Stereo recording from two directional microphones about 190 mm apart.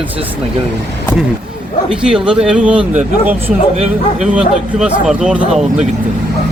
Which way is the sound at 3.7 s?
35° right (ahead or behind).